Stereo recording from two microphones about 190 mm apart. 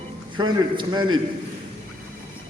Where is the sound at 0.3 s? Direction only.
25° right (ahead or behind).